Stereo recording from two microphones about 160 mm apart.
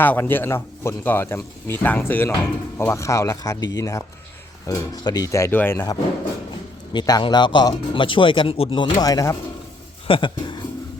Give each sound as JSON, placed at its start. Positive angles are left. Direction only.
{"t": 0.0, "sound": "speech", "side_deg": 10}
{"t": 6.9, "sound": "speech", "side_deg": 25}